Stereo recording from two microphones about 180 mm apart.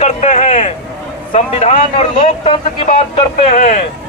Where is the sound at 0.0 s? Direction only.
35° left (ahead or behind).